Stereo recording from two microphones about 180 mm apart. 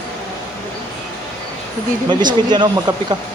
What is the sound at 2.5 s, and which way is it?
Speech, 25° right (ahead or behind).